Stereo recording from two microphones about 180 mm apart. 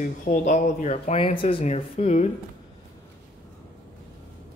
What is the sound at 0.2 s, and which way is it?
Speech, 45° left (ahead or behind).